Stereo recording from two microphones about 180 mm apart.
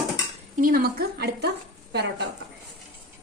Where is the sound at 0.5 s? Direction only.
50° right (ahead or behind); by 2.2 s 70° right (ahead or behind).